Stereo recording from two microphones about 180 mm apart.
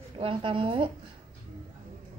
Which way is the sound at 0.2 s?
30° right (ahead or behind).